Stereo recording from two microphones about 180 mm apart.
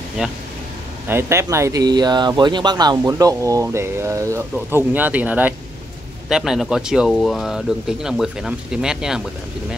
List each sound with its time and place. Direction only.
0.2 s speech: 5° right (ahead or behind)